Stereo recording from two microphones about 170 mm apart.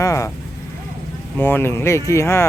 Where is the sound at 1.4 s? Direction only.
10° left (ahead or behind).